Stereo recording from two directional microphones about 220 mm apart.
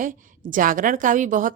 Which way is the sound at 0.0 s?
35° right (ahead or behind).